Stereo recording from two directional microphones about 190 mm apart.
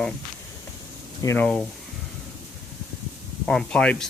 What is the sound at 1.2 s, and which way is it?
Speech, 10° left (ahead or behind).